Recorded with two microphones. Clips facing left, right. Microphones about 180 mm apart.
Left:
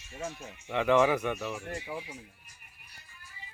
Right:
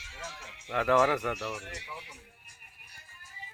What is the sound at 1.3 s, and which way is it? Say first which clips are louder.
Speech: left 2 dB; 90° right.